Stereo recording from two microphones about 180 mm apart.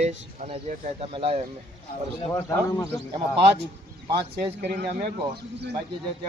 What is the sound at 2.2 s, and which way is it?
Speech, 20° left (ahead or behind).